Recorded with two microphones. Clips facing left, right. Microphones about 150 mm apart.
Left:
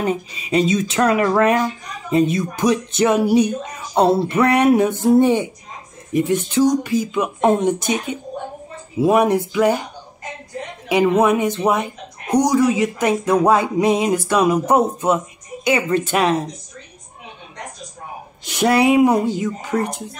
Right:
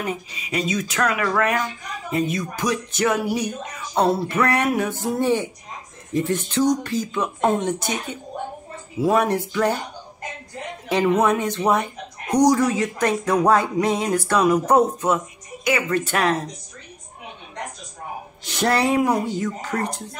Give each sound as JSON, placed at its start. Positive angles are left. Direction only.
{"t": 0.0, "sound": "speech", "side_deg": 25}
{"t": 11.1, "sound": "speech", "side_deg": 15}
{"t": 12.6, "sound": "speech", "side_deg": 15}
{"t": 18.6, "sound": "speech", "side_deg": 15}